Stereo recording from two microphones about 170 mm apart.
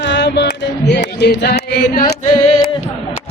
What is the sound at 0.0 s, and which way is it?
Music, 90° left.